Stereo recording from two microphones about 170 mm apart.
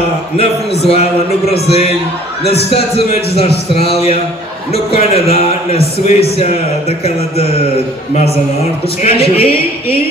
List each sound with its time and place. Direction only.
0.8 s speech: 40° left (ahead or behind)
2.4 s a man's voice: 75° left (ahead or behind)
3.7 s speech: 35° left (ahead or behind)
9.0 s speech: 35° left (ahead or behind)